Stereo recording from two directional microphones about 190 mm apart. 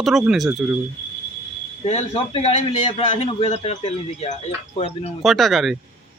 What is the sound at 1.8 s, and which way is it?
A man's voice, 30° left (ahead or behind).